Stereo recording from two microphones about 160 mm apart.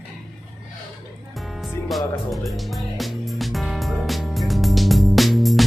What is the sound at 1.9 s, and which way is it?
Music, centre (ahead or behind).